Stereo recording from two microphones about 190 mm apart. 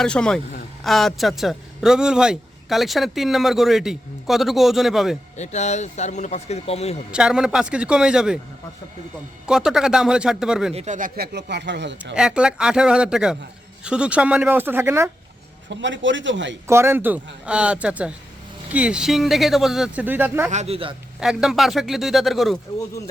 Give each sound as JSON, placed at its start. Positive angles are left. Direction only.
{"t": 0.0, "sound": "speech", "side_deg": 5}
{"t": 5.4, "sound": "speech", "side_deg": 35}
{"t": 7.1, "sound": "speech", "side_deg": -5}
{"t": 9.5, "sound": "speech", "side_deg": -5}
{"t": 10.8, "sound": "speech", "side_deg": -40}
{"t": 12.1, "sound": "speech", "side_deg": -5}
{"t": 15.7, "sound": "speech", "side_deg": -75}
{"t": 16.6, "sound": "speech", "side_deg": -15}
{"t": 20.5, "sound": "a man's voice", "side_deg": -35}
{"t": 21.2, "sound": "speech", "side_deg": 0}